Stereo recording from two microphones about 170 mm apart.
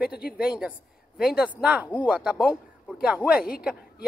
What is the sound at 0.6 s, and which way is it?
A woman's voice, 5° right (ahead or behind).